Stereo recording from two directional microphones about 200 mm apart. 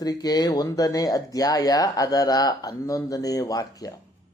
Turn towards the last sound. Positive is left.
turn(degrees=20)  # may be behind; listen again after turning